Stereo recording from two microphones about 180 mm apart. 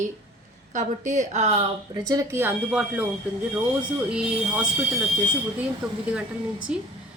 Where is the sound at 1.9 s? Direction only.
20° right (ahead or behind).